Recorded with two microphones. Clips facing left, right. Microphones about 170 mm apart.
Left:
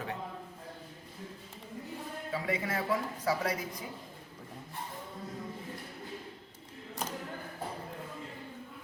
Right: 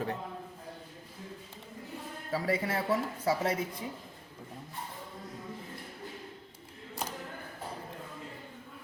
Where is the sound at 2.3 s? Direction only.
35° right (ahead or behind).